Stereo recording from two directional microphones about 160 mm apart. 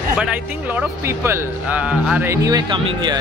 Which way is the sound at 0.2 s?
10° right (ahead or behind).